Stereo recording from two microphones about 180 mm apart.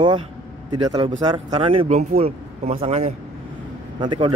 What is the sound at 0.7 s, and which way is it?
Speech, 25° right (ahead or behind).